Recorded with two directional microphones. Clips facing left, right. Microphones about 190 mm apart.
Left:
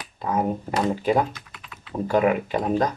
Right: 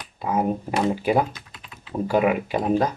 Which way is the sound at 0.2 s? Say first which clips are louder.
Right 1 dB; 10° right (ahead or behind).